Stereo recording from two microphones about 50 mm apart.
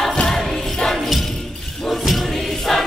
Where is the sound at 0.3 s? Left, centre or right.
Centre.